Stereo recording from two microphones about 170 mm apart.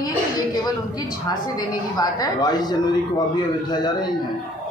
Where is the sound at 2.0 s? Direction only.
25° left (ahead or behind).